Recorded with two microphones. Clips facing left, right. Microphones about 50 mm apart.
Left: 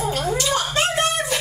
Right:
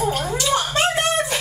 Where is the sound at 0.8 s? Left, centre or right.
Right.